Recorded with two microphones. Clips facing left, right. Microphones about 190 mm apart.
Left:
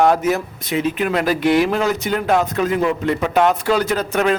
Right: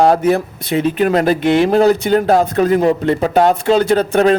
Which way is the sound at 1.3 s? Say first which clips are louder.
Right 4 dB; 25° right (ahead or behind).